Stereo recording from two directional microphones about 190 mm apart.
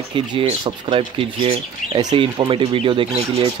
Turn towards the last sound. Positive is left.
turn(degrees=-25)  # may be behind; listen again after turning